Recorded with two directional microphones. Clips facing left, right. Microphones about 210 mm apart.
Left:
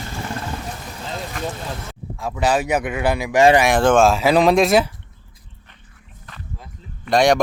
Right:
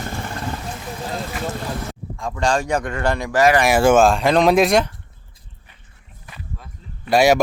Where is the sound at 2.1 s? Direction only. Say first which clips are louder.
Left 1 dB; 5° left (ahead or behind).